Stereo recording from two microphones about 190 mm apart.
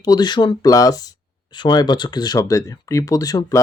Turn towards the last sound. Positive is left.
turn(degrees=20)  # may be behind; listen again after turning